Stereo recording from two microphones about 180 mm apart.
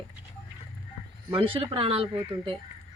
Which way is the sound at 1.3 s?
30° right (ahead or behind).